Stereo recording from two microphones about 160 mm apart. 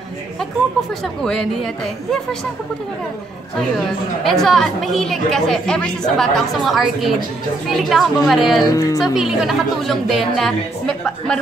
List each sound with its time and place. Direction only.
0.4 s a woman's voice: 5° left (ahead or behind)
4.2 s a woman's voice: centre (ahead or behind)
8.6 s speech: 20° left (ahead or behind)
9.0 s a woman's voice: 5° right (ahead or behind)